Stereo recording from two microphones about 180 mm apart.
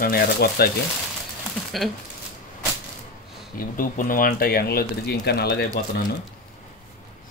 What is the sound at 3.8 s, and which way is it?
Speech, 50° left (ahead or behind).